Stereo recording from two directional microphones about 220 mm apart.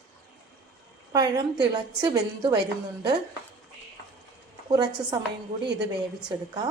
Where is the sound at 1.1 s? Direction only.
15° right (ahead or behind).